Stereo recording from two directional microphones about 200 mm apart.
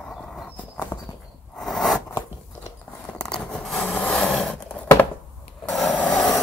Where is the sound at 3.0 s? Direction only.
5° left (ahead or behind).